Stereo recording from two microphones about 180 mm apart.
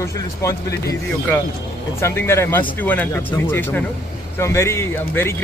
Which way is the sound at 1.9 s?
15° left (ahead or behind).